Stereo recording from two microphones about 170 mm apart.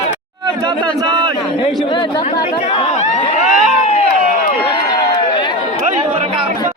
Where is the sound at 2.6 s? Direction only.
40° left (ahead or behind).